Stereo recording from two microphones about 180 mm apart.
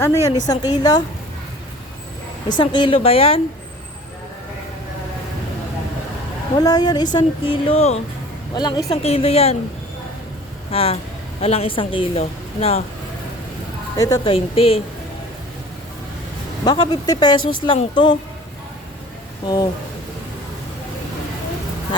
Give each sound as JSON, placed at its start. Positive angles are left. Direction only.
{"t": 0.0, "sound": "a woman's voice", "side_deg": 15}
{"t": 2.6, "sound": "speech", "side_deg": 25}
{"t": 6.6, "sound": "speech", "side_deg": 20}
{"t": 8.5, "sound": "speech", "side_deg": 25}
{"t": 9.0, "sound": "speech", "side_deg": 35}
{"t": 10.7, "sound": "speech", "side_deg": 35}
{"t": 13.9, "sound": "speech", "side_deg": 20}
{"t": 14.3, "sound": "speech", "side_deg": 30}
{"t": 16.6, "sound": "speech", "side_deg": 25}